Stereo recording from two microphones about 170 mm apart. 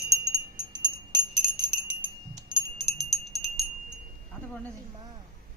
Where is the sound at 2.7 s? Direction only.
Centre (ahead or behind).